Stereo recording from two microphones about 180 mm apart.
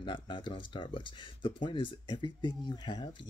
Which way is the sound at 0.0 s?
25° left (ahead or behind).